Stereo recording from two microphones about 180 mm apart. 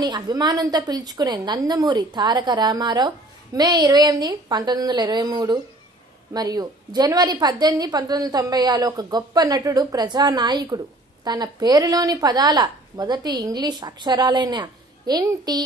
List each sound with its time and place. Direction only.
0.0 s a woman's voice: 20° right (ahead or behind)